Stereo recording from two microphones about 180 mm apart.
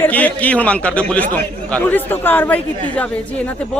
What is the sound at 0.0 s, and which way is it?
A man's voice, 10° left (ahead or behind).